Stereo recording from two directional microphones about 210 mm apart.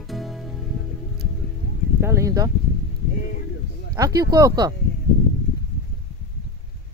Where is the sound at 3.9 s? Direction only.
15° right (ahead or behind).